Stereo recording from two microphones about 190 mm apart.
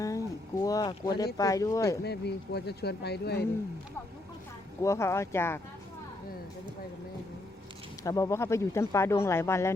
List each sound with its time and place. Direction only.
0.0 s a sound: 15° left (ahead or behind)
1.4 s speech: 15° left (ahead or behind)
2.0 s speech: 60° left (ahead or behind)
4.8 s speech: 15° left (ahead or behind)
8.0 s speech: 15° left (ahead or behind)